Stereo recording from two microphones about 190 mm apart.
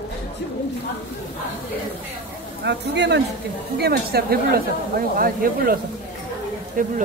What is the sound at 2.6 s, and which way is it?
Speech, 65° right (ahead or behind).